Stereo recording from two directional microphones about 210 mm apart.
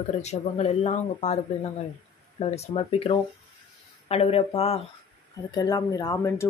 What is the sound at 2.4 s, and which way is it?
Speech, 30° left (ahead or behind).